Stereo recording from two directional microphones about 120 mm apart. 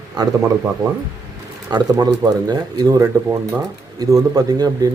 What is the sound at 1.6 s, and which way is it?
A man's voice, 35° right (ahead or behind).